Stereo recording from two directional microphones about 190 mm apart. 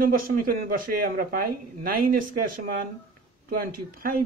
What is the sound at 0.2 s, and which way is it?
Speech, 45° right (ahead or behind).